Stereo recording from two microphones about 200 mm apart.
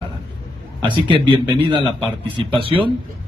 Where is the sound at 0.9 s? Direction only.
25° right (ahead or behind).